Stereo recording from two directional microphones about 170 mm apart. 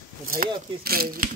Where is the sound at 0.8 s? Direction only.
60° right (ahead or behind).